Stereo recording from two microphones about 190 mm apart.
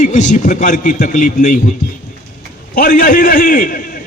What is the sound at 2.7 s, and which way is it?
A man's voice, 45° left (ahead or behind).